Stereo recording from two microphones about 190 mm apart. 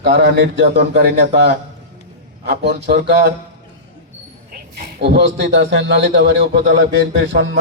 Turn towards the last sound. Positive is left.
turn(degrees=-75)  # may be behind; listen again after turning